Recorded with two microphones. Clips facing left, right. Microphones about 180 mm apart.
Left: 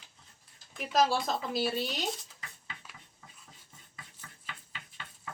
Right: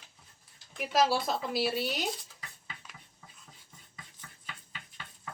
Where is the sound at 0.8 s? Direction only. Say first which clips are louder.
Even; 5° right (ahead or behind).